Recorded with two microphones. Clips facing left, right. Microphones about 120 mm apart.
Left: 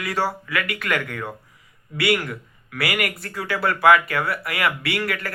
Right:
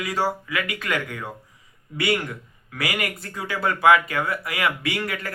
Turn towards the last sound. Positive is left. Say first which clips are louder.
# left 2 dB
turn(degrees=-20)  # may be behind; listen again after turning